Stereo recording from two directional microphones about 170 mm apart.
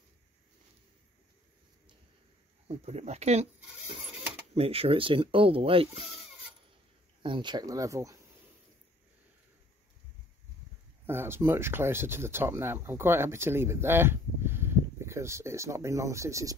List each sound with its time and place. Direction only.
2.7 s speech: 40° right (ahead or behind)
7.2 s speech: 25° right (ahead or behind)
11.1 s speech: 15° right (ahead or behind)